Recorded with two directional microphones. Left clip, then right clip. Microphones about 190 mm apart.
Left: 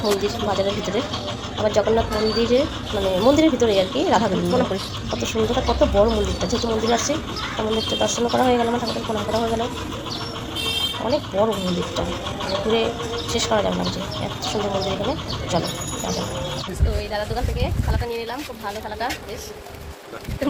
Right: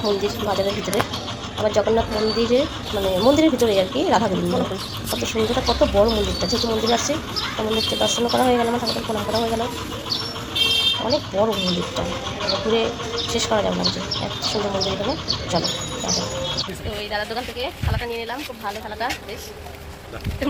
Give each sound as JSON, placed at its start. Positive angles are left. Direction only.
{"t": 0.0, "sound": "speech", "side_deg": 0}
{"t": 11.0, "sound": "speech", "side_deg": 0}